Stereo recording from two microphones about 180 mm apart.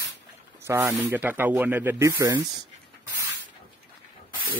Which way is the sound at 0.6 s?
15° right (ahead or behind).